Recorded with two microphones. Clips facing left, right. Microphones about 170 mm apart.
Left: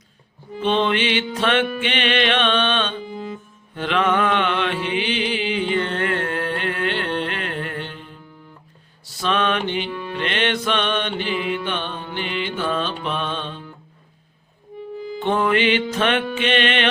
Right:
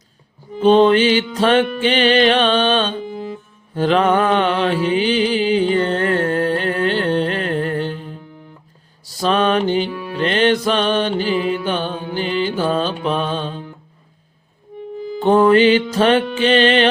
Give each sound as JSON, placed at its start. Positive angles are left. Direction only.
{"t": 0.6, "sound": "music", "side_deg": -40}
{"t": 3.8, "sound": "mantra", "side_deg": -35}
{"t": 9.9, "sound": "music", "side_deg": -5}
{"t": 10.2, "sound": "music", "side_deg": -35}
{"t": 15.2, "sound": "music", "side_deg": -35}